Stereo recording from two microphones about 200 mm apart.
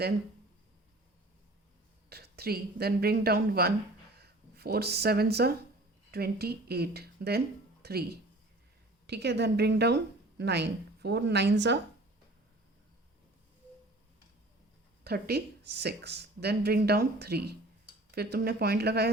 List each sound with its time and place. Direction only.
2.0 s a woman's voice: 50° right (ahead or behind)
15.0 s speech: 55° right (ahead or behind)